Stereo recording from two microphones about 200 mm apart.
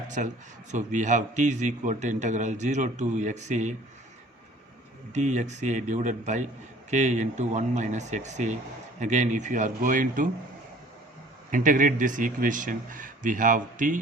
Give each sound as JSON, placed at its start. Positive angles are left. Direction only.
{"t": 0.2, "sound": "a man's voice", "side_deg": -40}
{"t": 5.1, "sound": "a man's voice", "side_deg": -35}
{"t": 11.5, "sound": "a man's voice", "side_deg": -40}